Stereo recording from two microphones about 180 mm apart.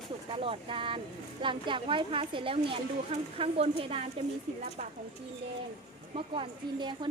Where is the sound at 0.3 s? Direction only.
30° right (ahead or behind).